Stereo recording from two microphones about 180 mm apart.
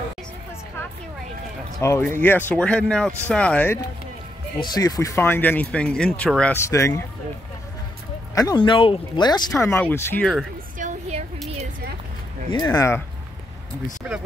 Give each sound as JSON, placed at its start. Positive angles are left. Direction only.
{"t": 1.8, "sound": "speech", "side_deg": 15}
{"t": 8.4, "sound": "speech", "side_deg": 25}
{"t": 9.6, "sound": "speech", "side_deg": 10}
{"t": 10.8, "sound": "a sound", "side_deg": -40}
{"t": 12.4, "sound": "speech", "side_deg": 20}
{"t": 14.0, "sound": "speech", "side_deg": -5}